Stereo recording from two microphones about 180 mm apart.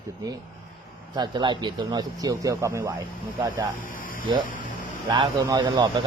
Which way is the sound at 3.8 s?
50° left (ahead or behind).